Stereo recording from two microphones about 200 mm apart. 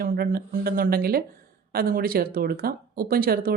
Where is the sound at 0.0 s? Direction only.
45° right (ahead or behind).